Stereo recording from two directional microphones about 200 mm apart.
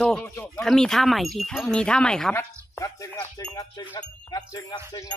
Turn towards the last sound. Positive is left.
turn(degrees=20)  # may be behind; listen again after turning